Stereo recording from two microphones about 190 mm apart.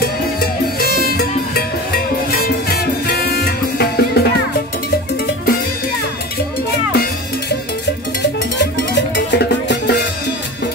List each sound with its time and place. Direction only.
0.0 s music: 55° left (ahead or behind)
2.3 s music: 55° left (ahead or behind)
8.9 s music: 65° left (ahead or behind)